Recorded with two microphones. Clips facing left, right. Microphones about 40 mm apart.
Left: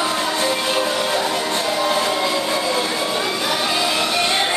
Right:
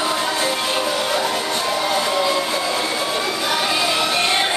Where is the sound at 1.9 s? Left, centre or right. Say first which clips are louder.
Even; centre.